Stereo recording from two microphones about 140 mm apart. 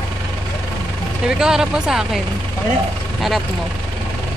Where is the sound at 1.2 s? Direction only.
5° right (ahead or behind).